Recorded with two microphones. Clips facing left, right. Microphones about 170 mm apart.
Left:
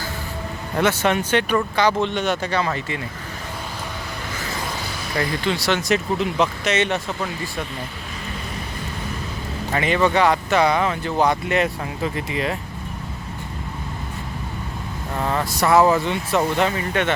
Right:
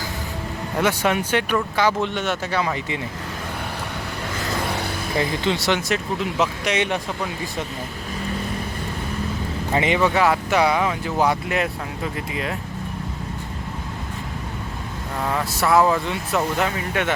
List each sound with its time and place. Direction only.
0.8 s speech: 5° right (ahead or behind)
5.1 s speech: 20° right (ahead or behind)
5.9 s speech: 5° right (ahead or behind)
9.7 s speech: 20° right (ahead or behind)
10.0 s speech: 5° right (ahead or behind)
15.2 s speech: centre (ahead or behind)